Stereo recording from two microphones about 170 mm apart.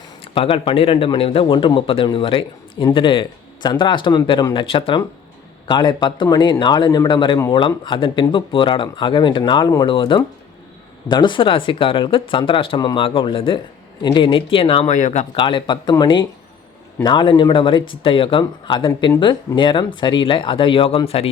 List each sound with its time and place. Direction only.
0.3 s a man's voice: 30° left (ahead or behind)
14.8 s speech: 45° left (ahead or behind)
15.4 s a man's voice: 30° left (ahead or behind)